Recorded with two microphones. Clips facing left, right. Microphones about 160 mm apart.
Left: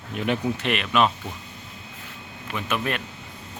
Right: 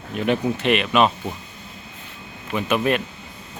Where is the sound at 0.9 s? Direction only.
15° right (ahead or behind).